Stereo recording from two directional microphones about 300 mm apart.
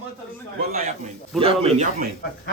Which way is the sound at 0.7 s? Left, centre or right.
Right.